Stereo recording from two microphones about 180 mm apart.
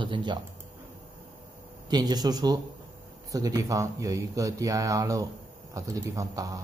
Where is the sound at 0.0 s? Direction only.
25° right (ahead or behind).